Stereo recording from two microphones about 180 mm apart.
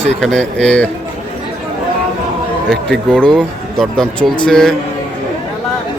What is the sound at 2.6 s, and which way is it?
Speech, 5° left (ahead or behind).